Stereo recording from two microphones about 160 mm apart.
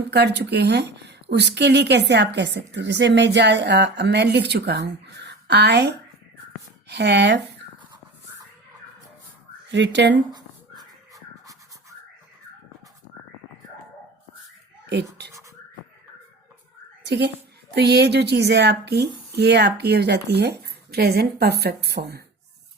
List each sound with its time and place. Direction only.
0.1 s speech: 90° right
9.7 s speech: 90° right
10.3 s music: 25° right (ahead or behind)
14.8 s speech: 90° right
17.0 s speech: 90° right